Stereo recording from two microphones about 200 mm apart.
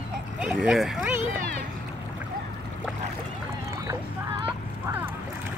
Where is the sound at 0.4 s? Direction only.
5° right (ahead or behind).